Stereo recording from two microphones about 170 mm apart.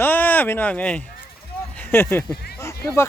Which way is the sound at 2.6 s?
15° left (ahead or behind).